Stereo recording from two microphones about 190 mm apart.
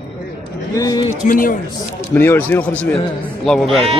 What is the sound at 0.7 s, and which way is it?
Speech, 20° left (ahead or behind).